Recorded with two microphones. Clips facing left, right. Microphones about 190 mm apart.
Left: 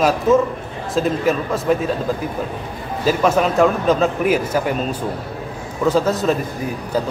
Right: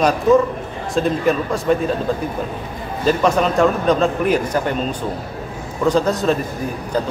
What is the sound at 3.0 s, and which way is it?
A man's voice, 5° left (ahead or behind).